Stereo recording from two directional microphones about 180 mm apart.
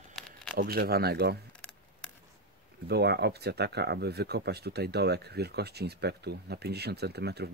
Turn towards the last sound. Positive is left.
turn(degrees=-65)  # may be behind; listen again after turning